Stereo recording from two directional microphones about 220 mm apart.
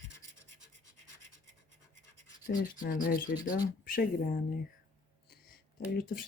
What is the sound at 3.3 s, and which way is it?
Speech, 15° left (ahead or behind).